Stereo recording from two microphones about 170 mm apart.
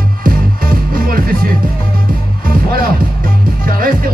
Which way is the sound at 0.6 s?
55° right (ahead or behind).